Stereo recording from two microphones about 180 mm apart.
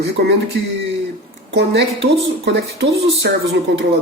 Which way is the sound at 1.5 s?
70° right (ahead or behind).